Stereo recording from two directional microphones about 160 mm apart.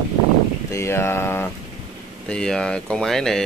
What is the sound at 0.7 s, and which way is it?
Speech, 15° left (ahead or behind).